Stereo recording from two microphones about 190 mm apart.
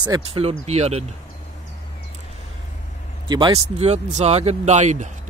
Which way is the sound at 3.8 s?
35° right (ahead or behind).